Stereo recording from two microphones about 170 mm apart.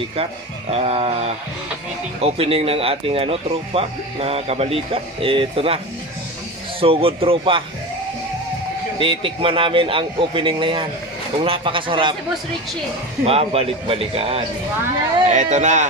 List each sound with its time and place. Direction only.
0.1 s speech: 40° right (ahead or behind)
6.8 s speech: 35° right (ahead or behind)
9.0 s speech: 30° right (ahead or behind)
13.2 s speech: 35° right (ahead or behind)